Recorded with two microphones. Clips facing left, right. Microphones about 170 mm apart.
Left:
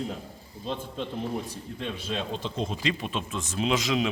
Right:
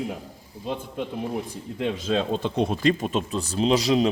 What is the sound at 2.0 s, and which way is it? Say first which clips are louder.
Speech: right 8 dB; 80° right.